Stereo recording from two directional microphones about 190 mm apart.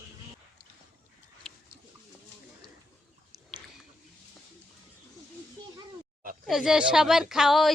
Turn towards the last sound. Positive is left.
turn(degrees=0)  # may be behind; listen again after turning